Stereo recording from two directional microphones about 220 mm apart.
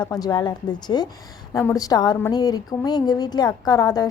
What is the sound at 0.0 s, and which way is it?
A woman's voice, 20° left (ahead or behind).